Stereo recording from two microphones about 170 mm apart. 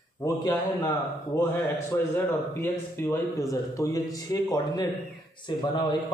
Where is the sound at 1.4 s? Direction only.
15° left (ahead or behind).